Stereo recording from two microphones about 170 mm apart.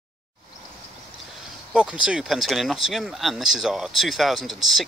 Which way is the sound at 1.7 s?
5° right (ahead or behind).